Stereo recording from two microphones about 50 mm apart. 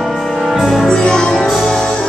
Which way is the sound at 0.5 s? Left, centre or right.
Centre.